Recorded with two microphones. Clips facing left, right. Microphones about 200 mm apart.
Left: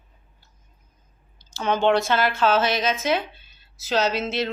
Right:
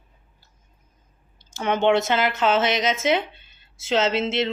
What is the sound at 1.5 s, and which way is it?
Speech, 60° right (ahead or behind).